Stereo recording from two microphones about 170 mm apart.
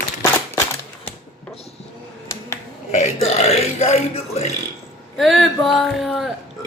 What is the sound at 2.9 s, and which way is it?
Burping, 40° left (ahead or behind).